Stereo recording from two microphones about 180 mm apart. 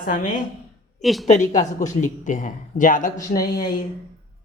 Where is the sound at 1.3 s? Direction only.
45° left (ahead or behind).